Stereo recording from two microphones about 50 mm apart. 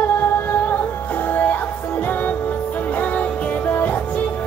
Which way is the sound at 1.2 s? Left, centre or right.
Left.